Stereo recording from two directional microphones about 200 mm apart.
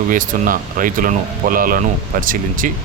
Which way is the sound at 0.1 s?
45° right (ahead or behind).